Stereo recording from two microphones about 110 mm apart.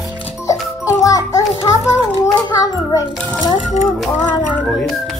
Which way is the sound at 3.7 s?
90° left.